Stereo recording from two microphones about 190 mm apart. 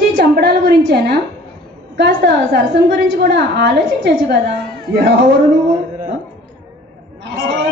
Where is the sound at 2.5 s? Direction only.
60° right (ahead or behind).